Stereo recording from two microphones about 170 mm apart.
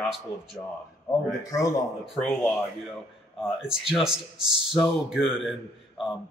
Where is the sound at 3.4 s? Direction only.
Centre (ahead or behind).